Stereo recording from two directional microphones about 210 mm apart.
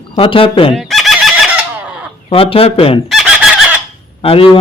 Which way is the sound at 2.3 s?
25° left (ahead or behind).